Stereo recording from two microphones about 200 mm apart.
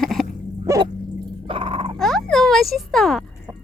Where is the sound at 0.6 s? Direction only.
15° right (ahead or behind).